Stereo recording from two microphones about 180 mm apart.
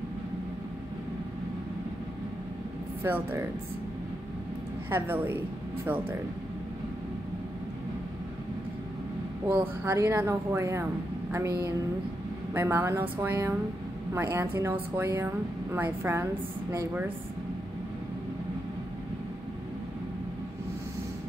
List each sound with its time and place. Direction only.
3.0 s speech: 15° right (ahead or behind)
4.8 s speech: 10° right (ahead or behind)
9.5 s speech: 15° right (ahead or behind)
12.5 s speech: 15° right (ahead or behind)